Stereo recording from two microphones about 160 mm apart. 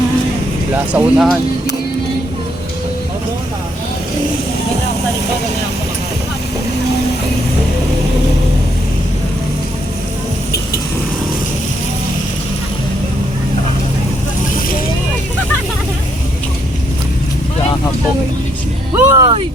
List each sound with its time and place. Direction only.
0.9 s speech: centre (ahead or behind)
18.9 s speech: 20° right (ahead or behind)